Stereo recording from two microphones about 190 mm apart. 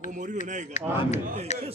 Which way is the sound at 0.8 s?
40° left (ahead or behind).